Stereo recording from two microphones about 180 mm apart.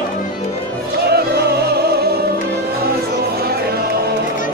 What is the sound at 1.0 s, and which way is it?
Music, 65° right (ahead or behind).